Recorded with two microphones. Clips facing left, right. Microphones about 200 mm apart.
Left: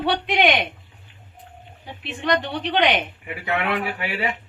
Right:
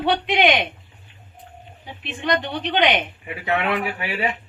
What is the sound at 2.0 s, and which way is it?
A woman's voice, 5° right (ahead or behind).